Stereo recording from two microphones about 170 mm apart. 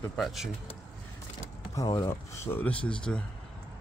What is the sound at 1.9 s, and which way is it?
Speech, 15° left (ahead or behind).